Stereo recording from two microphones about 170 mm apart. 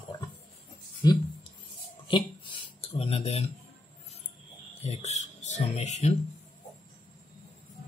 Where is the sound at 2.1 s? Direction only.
30° left (ahead or behind).